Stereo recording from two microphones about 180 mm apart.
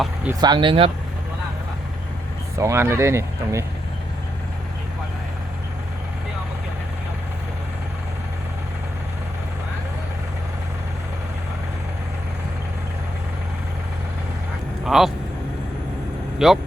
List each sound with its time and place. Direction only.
0.3 s speech: 25° right (ahead or behind)
2.6 s speech: 15° right (ahead or behind)
14.8 s speech: centre (ahead or behind)
16.4 s speech: 5° right (ahead or behind)